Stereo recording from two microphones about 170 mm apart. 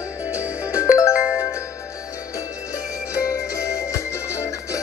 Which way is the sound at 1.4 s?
15° left (ahead or behind).